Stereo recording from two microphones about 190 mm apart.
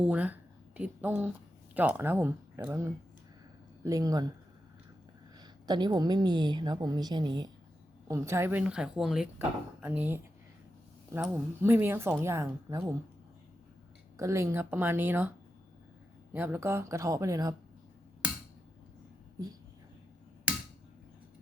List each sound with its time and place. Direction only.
0.0 s a woman's voice: 5° right (ahead or behind)
5.4 s a woman's voice: 20° right (ahead or behind)
14.2 s a woman's voice: 15° right (ahead or behind)
16.3 s a woman's voice: 10° right (ahead or behind)